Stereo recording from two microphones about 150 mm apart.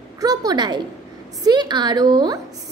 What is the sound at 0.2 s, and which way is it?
A woman's voice, 25° right (ahead or behind).